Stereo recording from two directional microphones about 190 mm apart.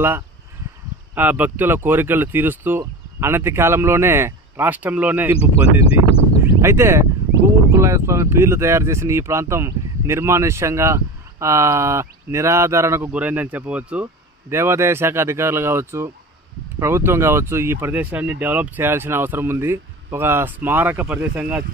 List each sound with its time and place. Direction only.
1.1 s speech: 10° right (ahead or behind)
5.9 s speech: 30° left (ahead or behind)
6.6 s speech: 15° right (ahead or behind)